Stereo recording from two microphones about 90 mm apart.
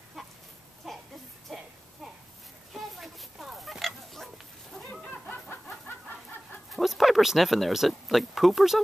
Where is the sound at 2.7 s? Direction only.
Centre (ahead or behind).